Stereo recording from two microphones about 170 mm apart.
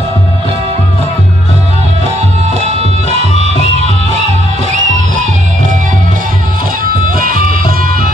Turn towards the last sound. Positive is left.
turn(degrees=-55)  # may be behind; listen again after turning